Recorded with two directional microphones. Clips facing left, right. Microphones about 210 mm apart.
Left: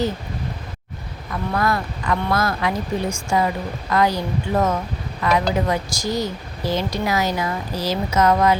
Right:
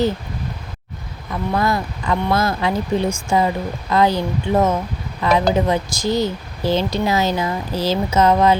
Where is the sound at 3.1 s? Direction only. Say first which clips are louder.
Right 3 dB; 5° right (ahead or behind).